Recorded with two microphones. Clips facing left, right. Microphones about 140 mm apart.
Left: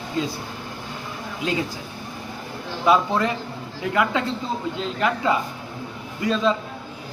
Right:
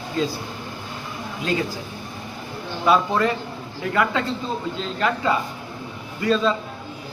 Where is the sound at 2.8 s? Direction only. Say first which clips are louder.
Even; 20° left (ahead or behind).